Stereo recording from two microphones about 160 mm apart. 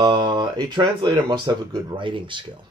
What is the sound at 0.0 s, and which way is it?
Speech, 30° right (ahead or behind).